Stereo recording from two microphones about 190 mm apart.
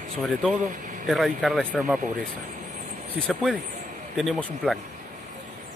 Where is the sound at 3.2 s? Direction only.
Centre (ahead or behind).